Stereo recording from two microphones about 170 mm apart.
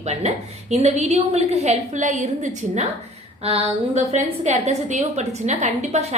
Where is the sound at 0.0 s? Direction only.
40° right (ahead or behind).